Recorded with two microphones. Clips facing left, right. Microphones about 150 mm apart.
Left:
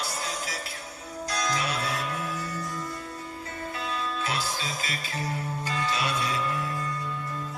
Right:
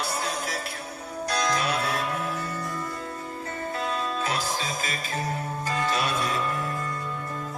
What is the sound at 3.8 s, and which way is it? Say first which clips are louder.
Music: right 3 dB; 45° right (ahead or behind).